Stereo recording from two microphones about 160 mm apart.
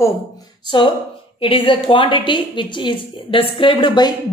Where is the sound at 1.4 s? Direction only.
35° left (ahead or behind).